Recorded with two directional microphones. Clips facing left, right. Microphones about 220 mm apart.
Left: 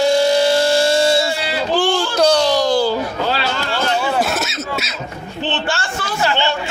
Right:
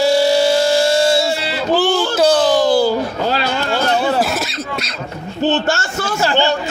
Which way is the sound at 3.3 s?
45° right (ahead or behind).